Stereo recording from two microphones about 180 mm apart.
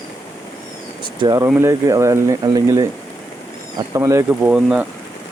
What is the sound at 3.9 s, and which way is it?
Speech, 15° right (ahead or behind).